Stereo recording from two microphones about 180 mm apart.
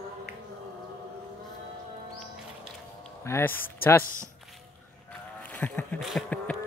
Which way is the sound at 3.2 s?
15° left (ahead or behind).